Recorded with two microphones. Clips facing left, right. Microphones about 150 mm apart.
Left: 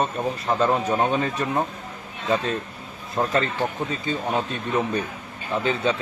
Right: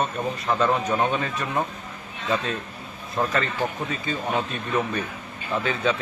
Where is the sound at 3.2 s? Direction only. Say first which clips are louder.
Left 1 dB; 15° left (ahead or behind).